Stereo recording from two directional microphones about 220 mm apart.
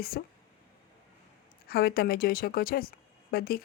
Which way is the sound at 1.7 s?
45° left (ahead or behind).